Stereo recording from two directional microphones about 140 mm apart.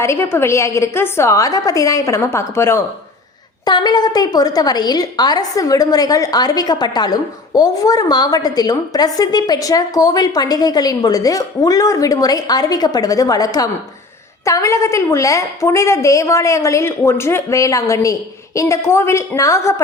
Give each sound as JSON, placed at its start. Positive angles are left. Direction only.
{"t": 0.0, "sound": "a woman's voice", "side_deg": 20}
{"t": 3.7, "sound": "a woman's voice", "side_deg": 30}